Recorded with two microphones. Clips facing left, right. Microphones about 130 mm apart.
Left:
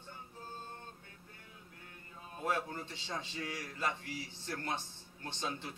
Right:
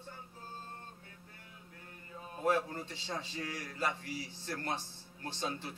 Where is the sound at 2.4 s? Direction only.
35° right (ahead or behind).